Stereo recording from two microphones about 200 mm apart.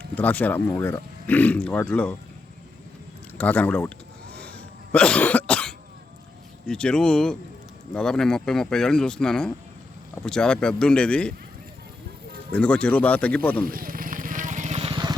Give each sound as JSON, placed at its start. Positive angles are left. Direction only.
{"t": 0.2, "sound": "speech", "side_deg": 10}
{"t": 3.3, "sound": "speech", "side_deg": 5}
{"t": 4.4, "sound": "cough", "side_deg": 5}
{"t": 6.7, "sound": "speech", "side_deg": 5}
{"t": 12.5, "sound": "speech", "side_deg": 5}
{"t": 13.7, "sound": "vehicle", "side_deg": -45}